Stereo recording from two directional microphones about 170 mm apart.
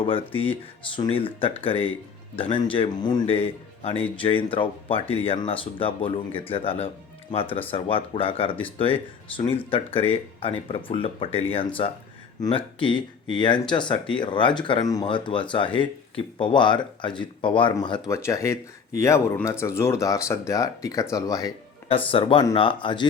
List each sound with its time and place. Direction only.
0.9 s speech: 30° left (ahead or behind)
12.5 s speech: 30° left (ahead or behind)
21.8 s speech: 30° left (ahead or behind)